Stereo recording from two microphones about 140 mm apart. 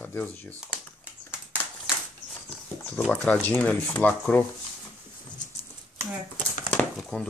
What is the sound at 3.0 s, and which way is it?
Speech, 5° left (ahead or behind).